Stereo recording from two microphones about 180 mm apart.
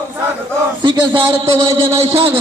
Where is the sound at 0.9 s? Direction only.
25° right (ahead or behind).